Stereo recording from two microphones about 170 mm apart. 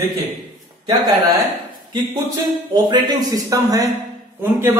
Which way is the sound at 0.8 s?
20° right (ahead or behind).